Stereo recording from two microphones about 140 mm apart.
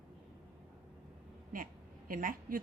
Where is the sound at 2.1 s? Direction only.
75° right (ahead or behind).